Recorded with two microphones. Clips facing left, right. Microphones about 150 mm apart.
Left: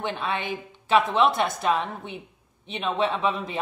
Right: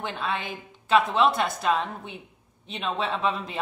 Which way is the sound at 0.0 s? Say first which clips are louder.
Left 2 dB; centre (ahead or behind).